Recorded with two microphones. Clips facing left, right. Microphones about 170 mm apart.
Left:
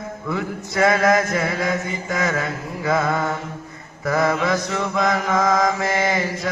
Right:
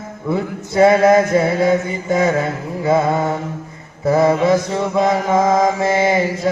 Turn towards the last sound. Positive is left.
turn(degrees=-25)  # may be behind; listen again after turning